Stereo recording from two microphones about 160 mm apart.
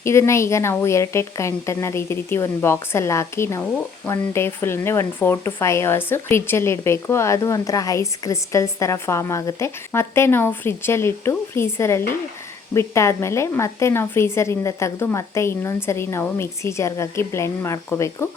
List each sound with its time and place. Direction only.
0.0 s speech: 15° left (ahead or behind)